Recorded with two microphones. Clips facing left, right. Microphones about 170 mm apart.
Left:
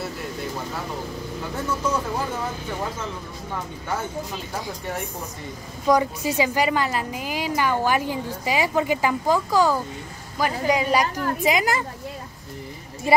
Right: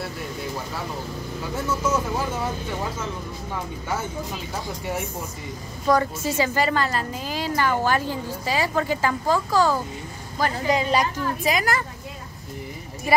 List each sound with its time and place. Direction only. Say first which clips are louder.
5.9 s a woman's voice: left 1 dB; 15° left (ahead or behind)